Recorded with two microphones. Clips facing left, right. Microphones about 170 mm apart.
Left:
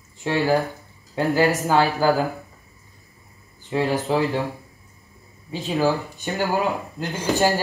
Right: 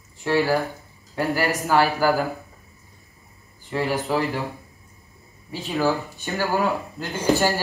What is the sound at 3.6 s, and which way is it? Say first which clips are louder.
Speech: left 2 dB; 20° left (ahead or behind).